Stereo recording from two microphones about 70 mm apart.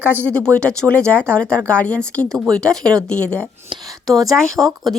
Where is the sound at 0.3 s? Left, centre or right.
Centre.